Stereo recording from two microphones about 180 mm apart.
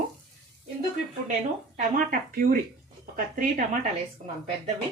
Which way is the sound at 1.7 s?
50° right (ahead or behind).